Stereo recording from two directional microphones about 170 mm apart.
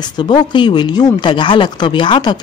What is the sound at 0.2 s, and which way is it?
Speech, 25° left (ahead or behind).